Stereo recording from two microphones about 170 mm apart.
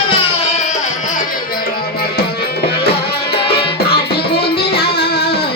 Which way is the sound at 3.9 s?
70° left (ahead or behind).